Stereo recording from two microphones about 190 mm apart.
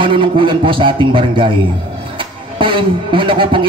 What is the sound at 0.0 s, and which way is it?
A man's voice, 25° right (ahead or behind).